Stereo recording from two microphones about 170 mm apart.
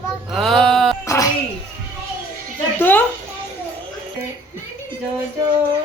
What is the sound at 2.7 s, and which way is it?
Music, 10° left (ahead or behind).